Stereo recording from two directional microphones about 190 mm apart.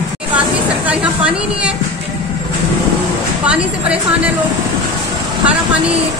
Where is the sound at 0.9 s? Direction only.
5° right (ahead or behind).